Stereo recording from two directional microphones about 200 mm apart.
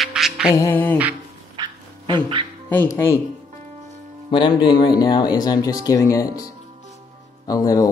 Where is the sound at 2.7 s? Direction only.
10° left (ahead or behind).